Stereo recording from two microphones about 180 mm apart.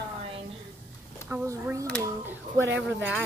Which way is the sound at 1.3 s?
15° right (ahead or behind).